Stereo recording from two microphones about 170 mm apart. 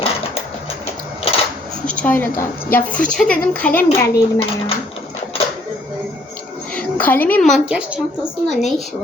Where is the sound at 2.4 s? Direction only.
10° left (ahead or behind).